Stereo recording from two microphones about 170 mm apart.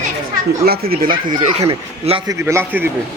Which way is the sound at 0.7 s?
60° right (ahead or behind).